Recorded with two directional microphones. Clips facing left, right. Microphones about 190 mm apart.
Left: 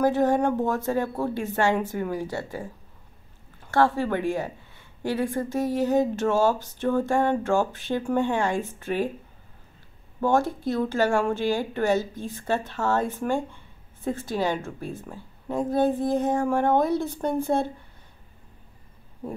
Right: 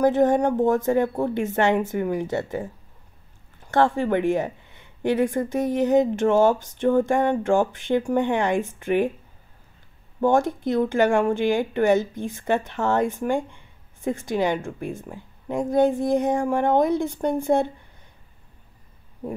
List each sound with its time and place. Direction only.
0.0 s speech: 20° right (ahead or behind)
3.7 s a woman's voice: 20° right (ahead or behind)
10.2 s a woman's voice: 15° right (ahead or behind)